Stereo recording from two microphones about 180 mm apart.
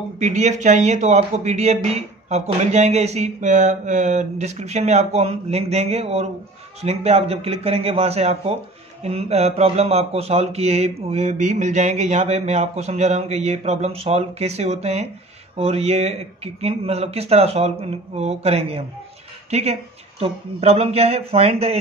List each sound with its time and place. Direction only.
0.2 s speech: 40° right (ahead or behind)